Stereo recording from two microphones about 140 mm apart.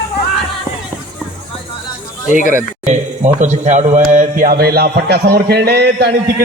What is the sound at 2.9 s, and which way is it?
Speech, 60° right (ahead or behind).